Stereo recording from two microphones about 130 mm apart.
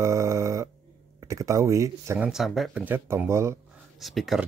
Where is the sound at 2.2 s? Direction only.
5° right (ahead or behind).